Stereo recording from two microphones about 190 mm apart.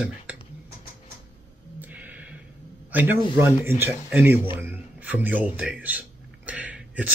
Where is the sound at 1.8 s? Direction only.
10° right (ahead or behind).